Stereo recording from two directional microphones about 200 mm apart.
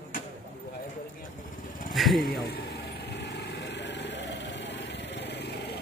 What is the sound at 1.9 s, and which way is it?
Vehicle, centre (ahead or behind).